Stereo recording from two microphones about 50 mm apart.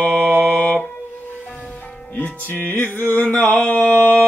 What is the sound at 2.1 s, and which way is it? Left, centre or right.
Music, left.